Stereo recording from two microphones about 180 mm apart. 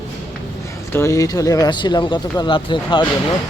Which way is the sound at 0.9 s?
15° left (ahead or behind).